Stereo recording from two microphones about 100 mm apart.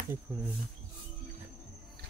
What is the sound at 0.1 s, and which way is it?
Speech, 25° right (ahead or behind).